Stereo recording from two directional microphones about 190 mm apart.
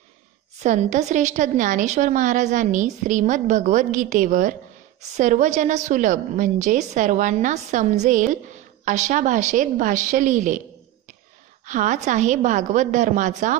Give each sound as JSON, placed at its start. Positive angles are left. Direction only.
{"t": 0.6, "sound": "a woman's voice", "side_deg": -40}
{"t": 11.6, "sound": "a woman's voice", "side_deg": -40}